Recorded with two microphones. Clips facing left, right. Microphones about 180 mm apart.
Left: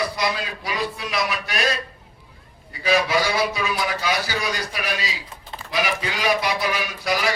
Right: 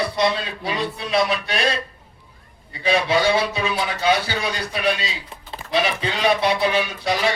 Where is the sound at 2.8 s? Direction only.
25° right (ahead or behind).